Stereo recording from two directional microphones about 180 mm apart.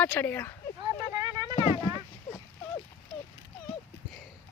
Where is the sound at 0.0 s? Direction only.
10° left (ahead or behind).